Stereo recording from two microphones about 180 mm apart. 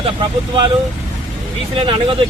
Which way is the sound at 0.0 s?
25° right (ahead or behind).